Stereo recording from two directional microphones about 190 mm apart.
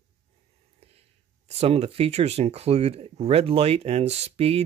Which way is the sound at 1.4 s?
35° right (ahead or behind).